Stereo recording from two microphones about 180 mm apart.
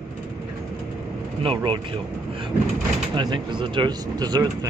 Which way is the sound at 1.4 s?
30° right (ahead or behind).